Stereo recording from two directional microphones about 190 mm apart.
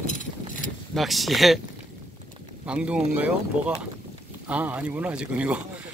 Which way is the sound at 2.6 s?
5° right (ahead or behind).